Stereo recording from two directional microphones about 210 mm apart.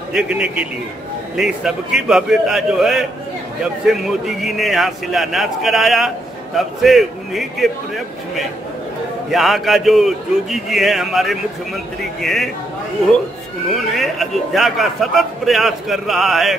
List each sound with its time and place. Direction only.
0.1 s a man's voice: 5° right (ahead or behind)
13.7 s a man's voice: centre (ahead or behind)